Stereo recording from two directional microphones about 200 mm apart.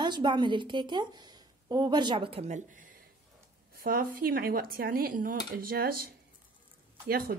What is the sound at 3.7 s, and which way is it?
Speech, 45° right (ahead or behind).